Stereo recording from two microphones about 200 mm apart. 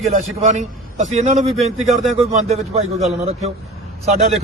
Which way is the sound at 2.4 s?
30° right (ahead or behind).